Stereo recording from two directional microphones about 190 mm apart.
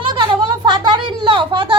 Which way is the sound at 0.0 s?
25° right (ahead or behind).